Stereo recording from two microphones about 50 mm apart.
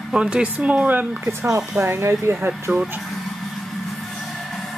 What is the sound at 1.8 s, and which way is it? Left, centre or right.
Speech, right.